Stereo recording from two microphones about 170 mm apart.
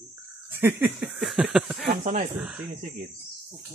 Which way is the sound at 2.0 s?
45° right (ahead or behind).